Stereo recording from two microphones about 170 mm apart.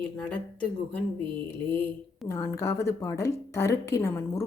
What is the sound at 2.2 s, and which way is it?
A woman's voice, 15° left (ahead or behind).